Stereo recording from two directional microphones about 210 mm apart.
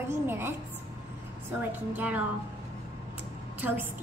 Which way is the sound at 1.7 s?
10° right (ahead or behind).